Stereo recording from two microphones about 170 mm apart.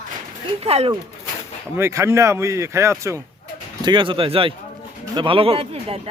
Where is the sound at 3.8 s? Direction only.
30° right (ahead or behind).